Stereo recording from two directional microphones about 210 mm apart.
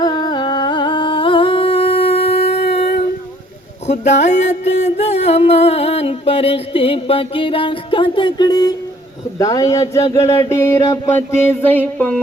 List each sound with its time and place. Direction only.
0.0 s humming: 20° left (ahead or behind)
3.8 s music: 35° left (ahead or behind)
9.4 s a sound: 15° left (ahead or behind)